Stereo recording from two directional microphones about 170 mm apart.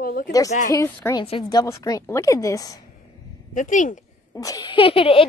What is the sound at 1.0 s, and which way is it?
A child's voice, 15° left (ahead or behind).